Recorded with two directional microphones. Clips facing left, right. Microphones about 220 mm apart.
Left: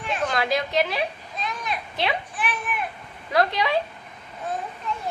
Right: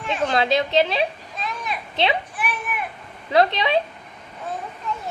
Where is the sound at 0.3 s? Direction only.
25° right (ahead or behind).